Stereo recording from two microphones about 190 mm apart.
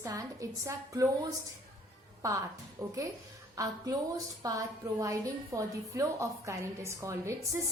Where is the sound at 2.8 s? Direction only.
15° right (ahead or behind).